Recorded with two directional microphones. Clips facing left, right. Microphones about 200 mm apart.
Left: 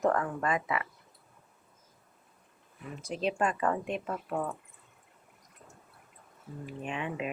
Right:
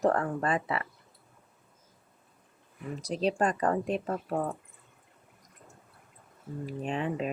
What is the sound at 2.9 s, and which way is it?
Speech, 35° right (ahead or behind).